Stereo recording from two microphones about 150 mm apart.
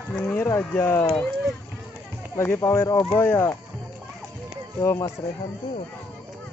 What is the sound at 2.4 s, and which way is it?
Speech, 15° left (ahead or behind).